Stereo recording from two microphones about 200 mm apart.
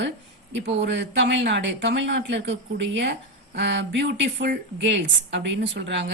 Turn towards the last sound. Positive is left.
turn(degrees=-65)  # may be behind; listen again after turning